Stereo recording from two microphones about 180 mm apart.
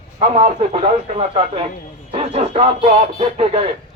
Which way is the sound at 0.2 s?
35° right (ahead or behind).